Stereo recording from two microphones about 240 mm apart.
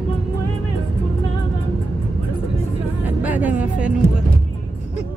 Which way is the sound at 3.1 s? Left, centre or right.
Centre.